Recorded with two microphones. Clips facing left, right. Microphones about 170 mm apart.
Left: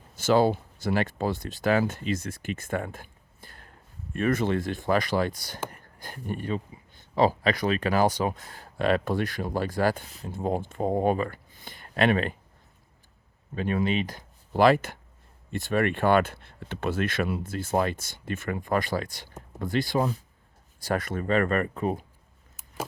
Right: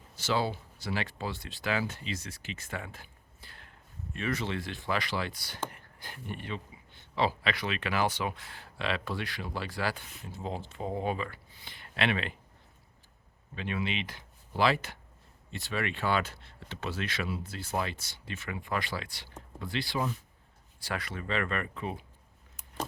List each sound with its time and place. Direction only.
0.2 s speech: 45° left (ahead or behind)
10.3 s speech: 50° left (ahead or behind)
13.6 s speech: 45° left (ahead or behind)